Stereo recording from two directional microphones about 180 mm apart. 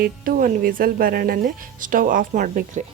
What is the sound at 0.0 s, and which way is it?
Speech, 50° right (ahead or behind).